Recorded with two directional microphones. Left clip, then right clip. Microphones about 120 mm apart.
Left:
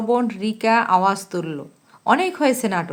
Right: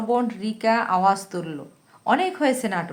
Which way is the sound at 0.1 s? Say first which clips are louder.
Left 3 dB; 35° left (ahead or behind).